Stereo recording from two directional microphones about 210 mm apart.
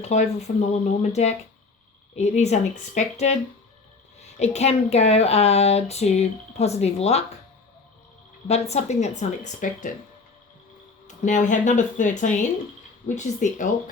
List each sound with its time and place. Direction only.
0.0 s speech: 35° left (ahead or behind)
8.7 s speech: 30° left (ahead or behind)
11.3 s speech: 35° left (ahead or behind)